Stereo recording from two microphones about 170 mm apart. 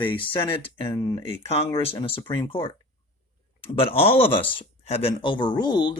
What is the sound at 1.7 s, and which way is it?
Speech, 30° left (ahead or behind).